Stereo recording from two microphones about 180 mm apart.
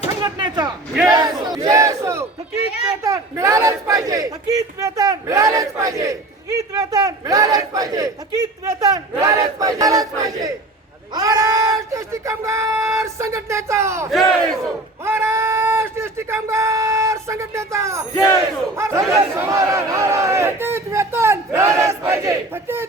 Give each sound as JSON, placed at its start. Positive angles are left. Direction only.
{"t": 0.2, "sound": "speech", "side_deg": -25}
{"t": 1.0, "sound": "battle cry", "side_deg": -20}
{"t": 3.0, "sound": "speech", "side_deg": -15}
{"t": 14.1, "sound": "battle cry", "side_deg": 0}
{"t": 15.0, "sound": "speech", "side_deg": -15}